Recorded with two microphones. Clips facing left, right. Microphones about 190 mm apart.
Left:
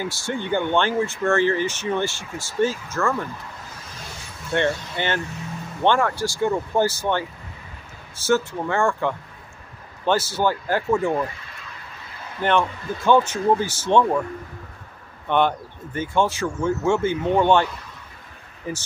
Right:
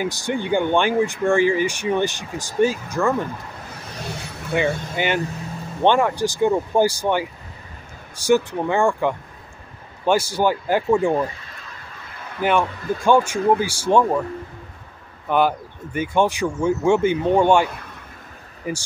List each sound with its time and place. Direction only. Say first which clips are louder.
0.0 s speech: right 3 dB; 15° right (ahead or behind)
4.5 s speech: right 1 dB; 5° right (ahead or behind)
12.4 s speech: right 1 dB; 10° right (ahead or behind)
15.2 s speech: right 1 dB; 5° right (ahead or behind)
18.7 s speech: right 3 dB; 10° right (ahead or behind)